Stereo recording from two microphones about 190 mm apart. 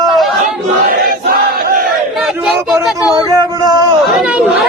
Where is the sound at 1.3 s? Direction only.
55° right (ahead or behind).